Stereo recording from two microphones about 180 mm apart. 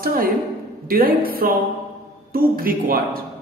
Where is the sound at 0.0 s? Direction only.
55° right (ahead or behind).